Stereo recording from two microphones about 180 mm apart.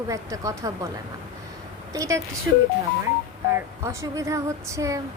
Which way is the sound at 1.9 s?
15° right (ahead or behind).